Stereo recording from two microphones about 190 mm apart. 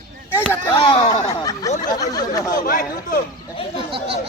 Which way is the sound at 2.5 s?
45° left (ahead or behind).